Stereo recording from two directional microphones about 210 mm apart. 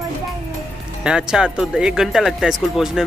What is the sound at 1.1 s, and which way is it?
Speech, 5° right (ahead or behind).